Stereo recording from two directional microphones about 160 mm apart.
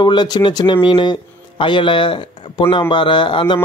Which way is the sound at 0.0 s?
25° left (ahead or behind).